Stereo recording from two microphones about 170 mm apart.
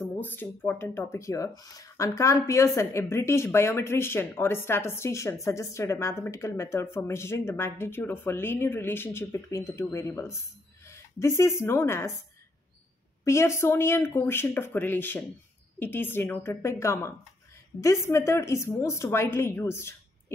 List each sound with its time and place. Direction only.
0.1 s speech: 10° left (ahead or behind)
13.2 s speech: 15° left (ahead or behind)